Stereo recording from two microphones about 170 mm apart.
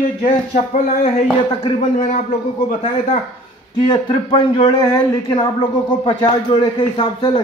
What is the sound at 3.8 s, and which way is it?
Speech, 25° left (ahead or behind).